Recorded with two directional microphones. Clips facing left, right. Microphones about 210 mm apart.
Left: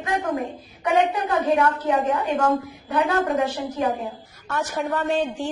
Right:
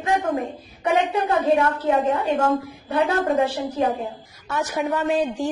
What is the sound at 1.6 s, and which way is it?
A woman's voice, 25° right (ahead or behind).